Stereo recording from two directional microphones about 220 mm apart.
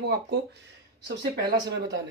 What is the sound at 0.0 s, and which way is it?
Speech, 50° right (ahead or behind).